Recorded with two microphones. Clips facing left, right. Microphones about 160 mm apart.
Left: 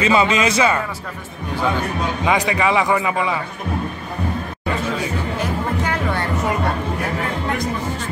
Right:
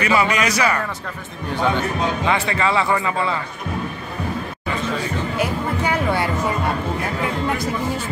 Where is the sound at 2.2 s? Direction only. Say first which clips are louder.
Left 5 dB; 15° left (ahead or behind).